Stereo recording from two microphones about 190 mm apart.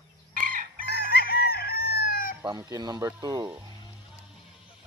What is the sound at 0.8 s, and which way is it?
Chicken, 60° left (ahead or behind).